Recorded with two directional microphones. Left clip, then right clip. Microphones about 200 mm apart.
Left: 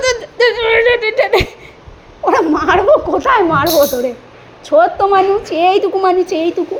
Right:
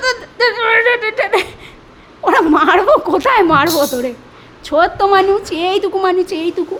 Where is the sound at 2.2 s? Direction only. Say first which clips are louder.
Even; 15° right (ahead or behind).